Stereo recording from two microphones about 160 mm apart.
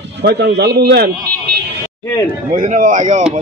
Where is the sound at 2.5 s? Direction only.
50° right (ahead or behind).